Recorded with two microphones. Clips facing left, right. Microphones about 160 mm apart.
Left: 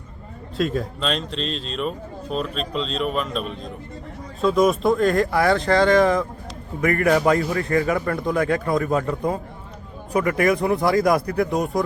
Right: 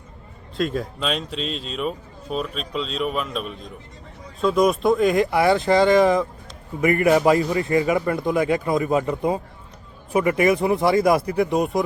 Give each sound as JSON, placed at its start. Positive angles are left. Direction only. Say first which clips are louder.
{"t": 0.5, "sound": "speech", "louder": "left 1 dB", "side_deg": 0}
{"t": 5.0, "sound": "speech", "louder": "right 1 dB", "side_deg": -15}
{"t": 5.3, "sound": "speech", "louder": "right 1 dB", "side_deg": -5}
{"t": 7.5, "sound": "speech", "louder": "right 1 dB", "side_deg": -20}
{"t": 8.6, "sound": "speech", "louder": "right 1 dB", "side_deg": -20}